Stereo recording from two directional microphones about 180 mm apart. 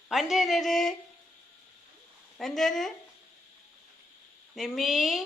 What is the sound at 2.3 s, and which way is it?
Speech, centre (ahead or behind).